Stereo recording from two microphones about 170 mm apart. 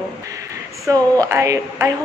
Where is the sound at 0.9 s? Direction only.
20° right (ahead or behind).